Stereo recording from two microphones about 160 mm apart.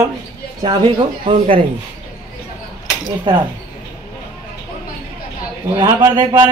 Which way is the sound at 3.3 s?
30° right (ahead or behind).